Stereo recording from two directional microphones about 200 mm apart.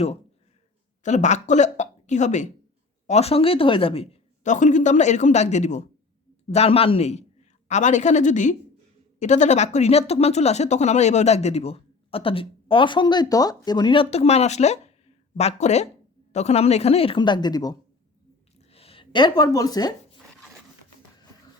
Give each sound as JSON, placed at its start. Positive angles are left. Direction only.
{"t": 1.0, "sound": "speech", "side_deg": 35}